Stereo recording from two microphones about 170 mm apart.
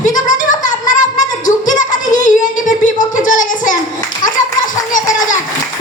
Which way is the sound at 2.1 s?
45° left (ahead or behind).